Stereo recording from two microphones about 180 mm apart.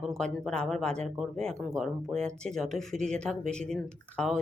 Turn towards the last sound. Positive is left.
turn(degrees=5)  # may be behind; listen again after turning